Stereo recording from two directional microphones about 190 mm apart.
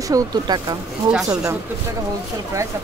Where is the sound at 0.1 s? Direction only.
20° right (ahead or behind).